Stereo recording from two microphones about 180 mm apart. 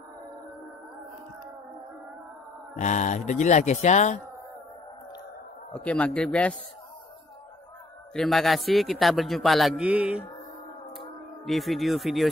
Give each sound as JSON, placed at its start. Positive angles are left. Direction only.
{"t": 2.7, "sound": "speech", "side_deg": 45}
{"t": 5.7, "sound": "a man's voice", "side_deg": 5}
{"t": 8.1, "sound": "a man's voice", "side_deg": 0}
{"t": 11.4, "sound": "a man's voice", "side_deg": 0}